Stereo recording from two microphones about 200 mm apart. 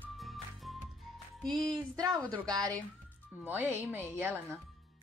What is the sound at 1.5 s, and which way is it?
Speech, 20° right (ahead or behind).